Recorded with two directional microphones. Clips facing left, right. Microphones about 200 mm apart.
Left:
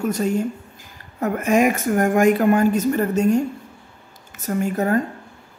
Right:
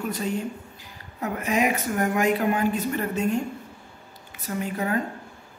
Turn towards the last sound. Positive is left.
turn(degrees=45)  # may be behind; listen again after turning